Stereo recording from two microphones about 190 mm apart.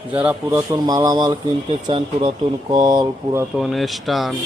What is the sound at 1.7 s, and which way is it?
Speech, 30° right (ahead or behind).